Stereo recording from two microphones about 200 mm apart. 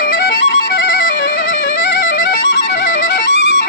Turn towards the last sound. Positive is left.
turn(degrees=65)  # may be behind; listen again after turning